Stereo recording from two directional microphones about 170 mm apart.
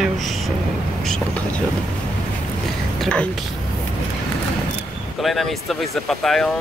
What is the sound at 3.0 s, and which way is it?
Speech, 5° left (ahead or behind).